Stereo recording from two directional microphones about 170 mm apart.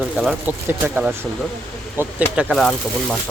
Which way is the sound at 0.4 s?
10° right (ahead or behind).